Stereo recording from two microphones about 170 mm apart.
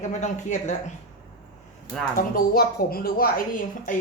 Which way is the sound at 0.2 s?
45° left (ahead or behind).